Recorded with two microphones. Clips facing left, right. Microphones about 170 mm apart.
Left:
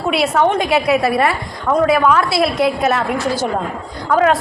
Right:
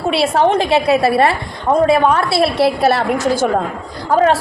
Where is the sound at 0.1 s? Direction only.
30° right (ahead or behind).